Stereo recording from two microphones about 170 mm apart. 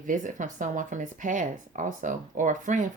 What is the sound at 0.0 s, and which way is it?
Speech, 50° right (ahead or behind).